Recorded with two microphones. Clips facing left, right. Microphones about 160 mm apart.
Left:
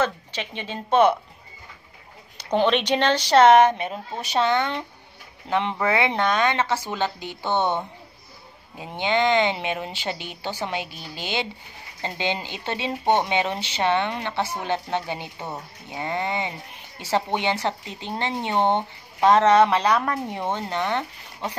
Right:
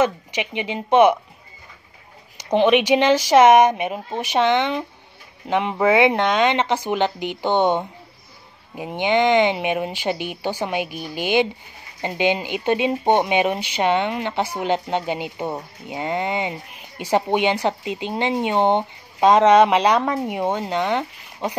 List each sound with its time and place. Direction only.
0.0 s speech: 15° right (ahead or behind)
2.5 s speech: 10° right (ahead or behind)